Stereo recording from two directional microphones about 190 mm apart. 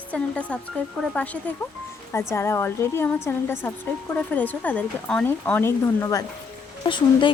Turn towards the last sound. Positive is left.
turn(degrees=25)  # may be behind; listen again after turning